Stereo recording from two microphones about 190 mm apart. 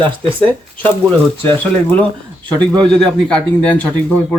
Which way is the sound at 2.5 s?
25° right (ahead or behind).